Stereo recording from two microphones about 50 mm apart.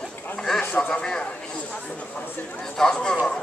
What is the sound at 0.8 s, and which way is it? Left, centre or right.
Speech, left.